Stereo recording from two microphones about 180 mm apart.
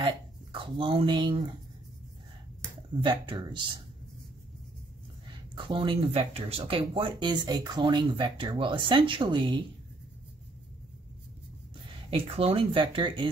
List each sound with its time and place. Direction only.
0.0 s a sound: 25° right (ahead or behind)
3.0 s speech: 25° right (ahead or behind)
5.5 s speech: 25° right (ahead or behind)
12.1 s speech: 30° right (ahead or behind)